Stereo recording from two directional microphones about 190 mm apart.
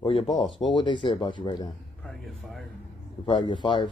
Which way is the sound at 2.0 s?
Centre (ahead or behind).